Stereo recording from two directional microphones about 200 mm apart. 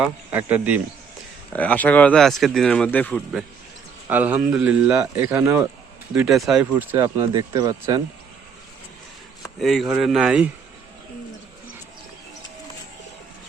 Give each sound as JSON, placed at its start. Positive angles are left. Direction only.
{"t": 0.0, "sound": "speech", "side_deg": -5}
{"t": 1.5, "sound": "speech", "side_deg": 10}
{"t": 4.1, "sound": "speech", "side_deg": -10}
{"t": 6.9, "sound": "speech", "side_deg": -20}
{"t": 9.6, "sound": "speech", "side_deg": 0}